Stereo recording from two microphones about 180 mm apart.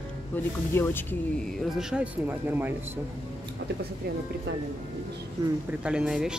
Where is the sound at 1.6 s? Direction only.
5° right (ahead or behind).